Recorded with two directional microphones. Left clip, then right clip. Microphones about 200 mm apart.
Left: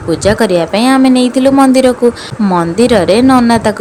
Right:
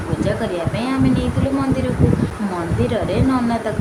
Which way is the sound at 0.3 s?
60° left (ahead or behind).